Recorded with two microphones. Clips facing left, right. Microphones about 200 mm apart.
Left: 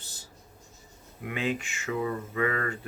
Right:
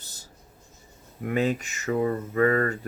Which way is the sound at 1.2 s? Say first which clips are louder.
Right 6 dB; 40° right (ahead or behind).